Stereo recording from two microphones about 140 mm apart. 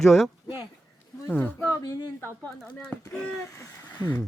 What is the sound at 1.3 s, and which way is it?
Speech, 15° left (ahead or behind).